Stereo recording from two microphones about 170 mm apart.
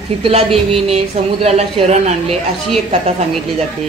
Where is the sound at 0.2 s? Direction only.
35° right (ahead or behind).